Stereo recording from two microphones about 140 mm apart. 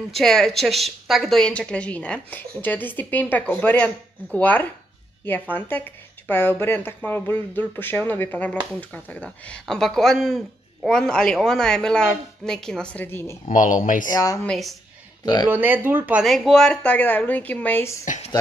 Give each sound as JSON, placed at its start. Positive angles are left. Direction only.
{"t": 0.1, "sound": "a woman's voice", "side_deg": 5}
{"t": 13.5, "sound": "speech", "side_deg": 70}
{"t": 14.0, "sound": "speech", "side_deg": 25}
{"t": 14.4, "sound": "speech", "side_deg": 5}
{"t": 15.5, "sound": "speech", "side_deg": -15}
{"t": 16.3, "sound": "a woman's voice", "side_deg": 0}
{"t": 18.0, "sound": "speech", "side_deg": 60}